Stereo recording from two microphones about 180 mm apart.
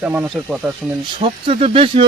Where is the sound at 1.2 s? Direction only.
35° right (ahead or behind).